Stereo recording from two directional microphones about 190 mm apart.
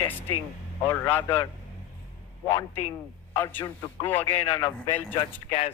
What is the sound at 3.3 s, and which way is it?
A man's voice, 10° left (ahead or behind).